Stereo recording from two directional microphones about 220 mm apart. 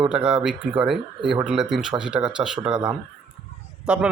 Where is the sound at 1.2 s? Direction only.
20° right (ahead or behind).